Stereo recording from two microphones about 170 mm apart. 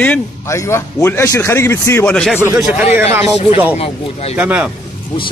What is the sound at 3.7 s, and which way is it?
Speech, 40° left (ahead or behind).